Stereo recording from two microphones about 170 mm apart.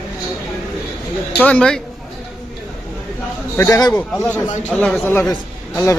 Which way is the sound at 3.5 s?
15° left (ahead or behind).